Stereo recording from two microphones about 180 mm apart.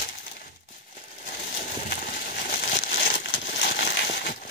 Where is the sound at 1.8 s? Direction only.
50° left (ahead or behind).